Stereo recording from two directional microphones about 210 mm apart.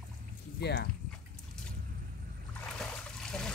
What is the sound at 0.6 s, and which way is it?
Speech, 50° left (ahead or behind).